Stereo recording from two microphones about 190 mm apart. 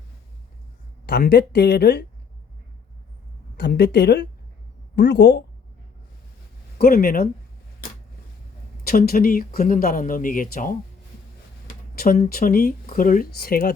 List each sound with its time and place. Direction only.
1.0 s speech: 60° left (ahead or behind)
3.6 s speech: 60° left (ahead or behind)
6.7 s speech: 50° left (ahead or behind)
8.8 s speech: 50° left (ahead or behind)
11.9 s speech: 50° left (ahead or behind)